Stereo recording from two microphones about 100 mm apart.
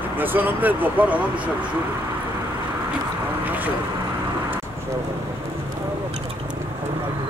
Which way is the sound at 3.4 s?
15° right (ahead or behind).